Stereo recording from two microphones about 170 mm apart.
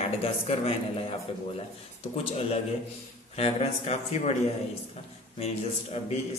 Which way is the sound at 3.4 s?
35° left (ahead or behind).